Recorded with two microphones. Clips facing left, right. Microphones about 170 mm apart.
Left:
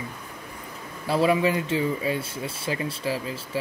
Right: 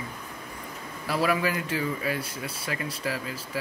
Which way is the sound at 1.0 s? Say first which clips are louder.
Left 5 dB; 25° left (ahead or behind).